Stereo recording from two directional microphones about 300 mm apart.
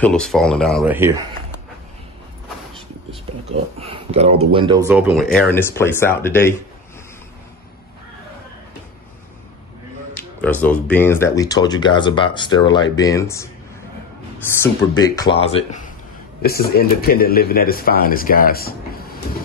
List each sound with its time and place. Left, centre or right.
0.0 s speech: centre
3.4 s speech: centre
10.4 s speech: centre
14.5 s speech: centre
16.4 s speech: left